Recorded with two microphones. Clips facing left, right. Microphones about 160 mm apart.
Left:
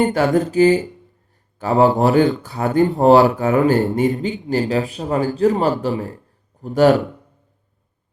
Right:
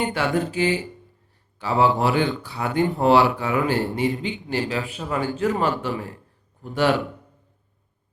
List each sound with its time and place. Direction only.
0.0 s speech: 40° left (ahead or behind)